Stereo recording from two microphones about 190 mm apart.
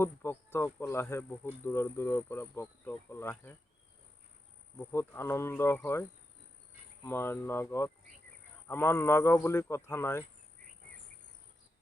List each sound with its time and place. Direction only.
0.0 s speech: 15° left (ahead or behind)
4.8 s speech: 10° left (ahead or behind)